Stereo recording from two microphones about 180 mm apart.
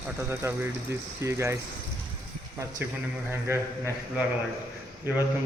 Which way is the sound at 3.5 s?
15° right (ahead or behind).